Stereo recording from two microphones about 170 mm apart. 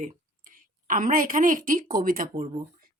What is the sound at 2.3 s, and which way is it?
Speech, 35° right (ahead or behind).